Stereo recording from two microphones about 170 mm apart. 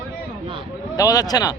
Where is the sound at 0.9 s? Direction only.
20° left (ahead or behind).